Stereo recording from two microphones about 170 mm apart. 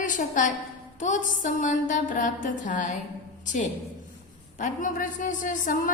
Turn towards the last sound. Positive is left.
turn(degrees=50)  # may be behind; listen again after turning